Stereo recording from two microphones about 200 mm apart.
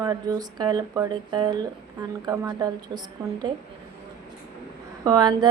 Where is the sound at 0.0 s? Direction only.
20° right (ahead or behind).